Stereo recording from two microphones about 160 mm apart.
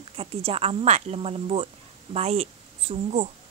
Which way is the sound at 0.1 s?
35° right (ahead or behind).